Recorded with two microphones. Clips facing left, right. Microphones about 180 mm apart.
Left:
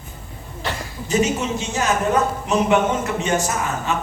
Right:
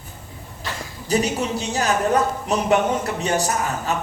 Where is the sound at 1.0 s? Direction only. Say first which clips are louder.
Left 1 dB; 35° right (ahead or behind).